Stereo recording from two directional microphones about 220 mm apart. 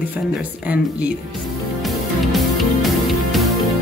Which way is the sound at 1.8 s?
Centre (ahead or behind).